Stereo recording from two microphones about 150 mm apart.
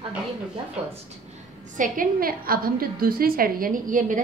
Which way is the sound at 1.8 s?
70° right (ahead or behind).